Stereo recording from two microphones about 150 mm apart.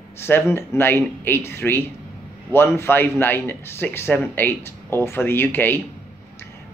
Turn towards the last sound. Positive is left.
turn(degrees=15)  # may be behind; listen again after turning